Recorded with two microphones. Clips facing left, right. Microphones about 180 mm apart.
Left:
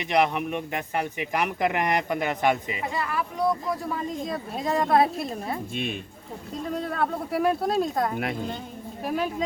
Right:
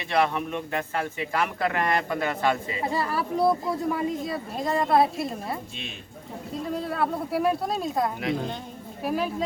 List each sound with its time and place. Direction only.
0.0 s a man's voice: 15° left (ahead or behind)
2.8 s speech: 35° right (ahead or behind)
3.9 s a woman's voice: 5° right (ahead or behind)
6.7 s a woman's voice: 5° right (ahead or behind)